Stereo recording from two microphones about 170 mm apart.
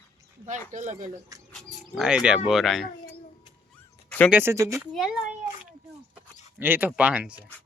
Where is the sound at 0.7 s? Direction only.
45° right (ahead or behind).